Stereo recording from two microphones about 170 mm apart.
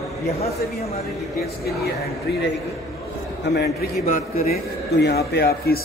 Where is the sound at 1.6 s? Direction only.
75° left (ahead or behind).